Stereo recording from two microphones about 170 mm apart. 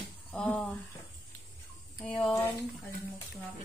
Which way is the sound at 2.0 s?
5° left (ahead or behind).